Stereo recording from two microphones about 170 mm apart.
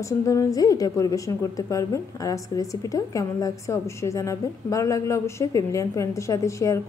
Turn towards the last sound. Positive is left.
turn(degrees=20)  # may be behind; listen again after turning